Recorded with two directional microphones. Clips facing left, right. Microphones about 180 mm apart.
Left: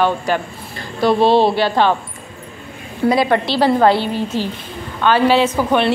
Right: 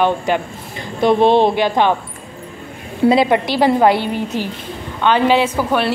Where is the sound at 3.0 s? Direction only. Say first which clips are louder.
Right 2 dB; 20° right (ahead or behind).